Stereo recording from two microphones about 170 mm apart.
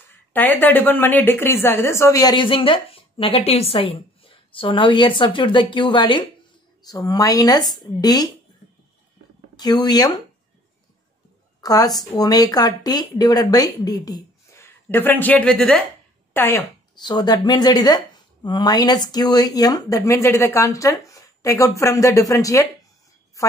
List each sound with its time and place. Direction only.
0.3 s a woman's voice: 10° left (ahead or behind)
9.6 s a woman's voice: 25° left (ahead or behind)
11.6 s a woman's voice: 20° left (ahead or behind)
16.9 s a woman's voice: 25° left (ahead or behind)